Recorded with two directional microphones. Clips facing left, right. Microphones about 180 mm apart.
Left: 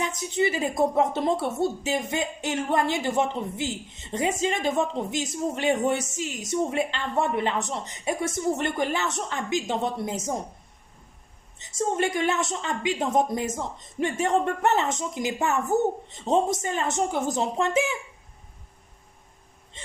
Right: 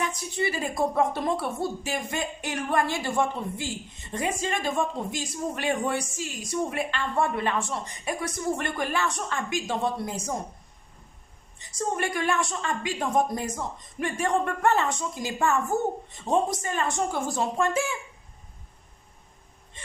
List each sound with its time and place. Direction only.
0.0 s a woman's voice: 20° left (ahead or behind)
11.5 s a woman's voice: 25° left (ahead or behind)